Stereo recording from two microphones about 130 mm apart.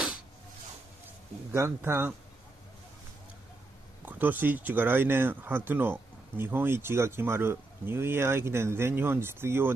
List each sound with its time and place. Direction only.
1.5 s speech: 20° right (ahead or behind)
4.0 s speech: 15° right (ahead or behind)